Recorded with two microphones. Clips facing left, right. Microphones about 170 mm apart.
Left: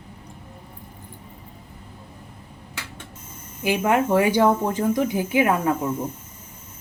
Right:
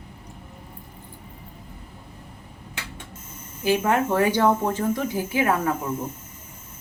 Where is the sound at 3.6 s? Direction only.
15° left (ahead or behind).